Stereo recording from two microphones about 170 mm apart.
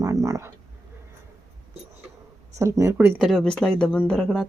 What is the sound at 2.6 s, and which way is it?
Speech, 15° right (ahead or behind).